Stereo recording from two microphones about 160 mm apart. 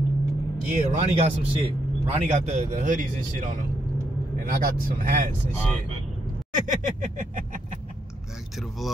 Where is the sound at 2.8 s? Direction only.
55° right (ahead or behind).